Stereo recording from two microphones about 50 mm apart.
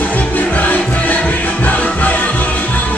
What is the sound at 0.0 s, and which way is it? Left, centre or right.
Music, left.